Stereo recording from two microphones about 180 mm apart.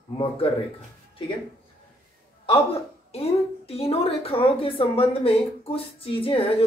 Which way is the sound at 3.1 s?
35° left (ahead or behind).